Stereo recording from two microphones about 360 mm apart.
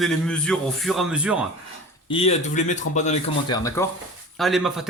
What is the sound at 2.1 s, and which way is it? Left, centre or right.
Speech, centre.